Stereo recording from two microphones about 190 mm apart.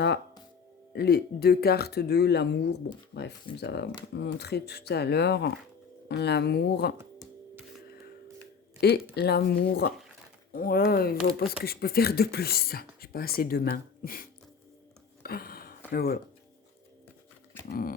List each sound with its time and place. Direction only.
0.9 s speech: 55° left (ahead or behind)
8.8 s speech: 55° left (ahead or behind)
15.2 s a sound: 50° left (ahead or behind)
15.9 s speech: 55° left (ahead or behind)
17.7 s speech: 50° left (ahead or behind)